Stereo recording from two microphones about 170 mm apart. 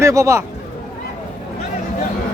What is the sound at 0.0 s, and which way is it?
Speech, 20° right (ahead or behind).